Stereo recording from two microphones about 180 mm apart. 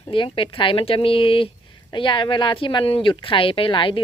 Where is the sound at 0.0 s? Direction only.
30° left (ahead or behind).